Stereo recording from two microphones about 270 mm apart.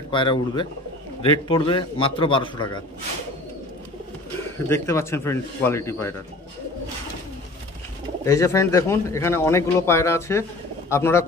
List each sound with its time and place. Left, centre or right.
0.1 s a man's voice: centre
4.6 s a man's voice: centre
8.3 s a man's voice: centre